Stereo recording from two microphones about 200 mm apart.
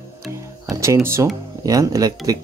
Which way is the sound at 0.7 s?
15° right (ahead or behind).